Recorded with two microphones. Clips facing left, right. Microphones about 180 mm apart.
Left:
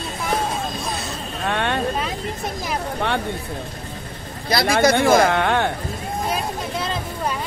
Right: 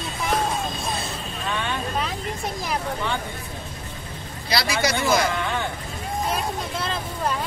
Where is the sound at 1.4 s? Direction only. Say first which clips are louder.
Left 6 dB; 65° left (ahead or behind).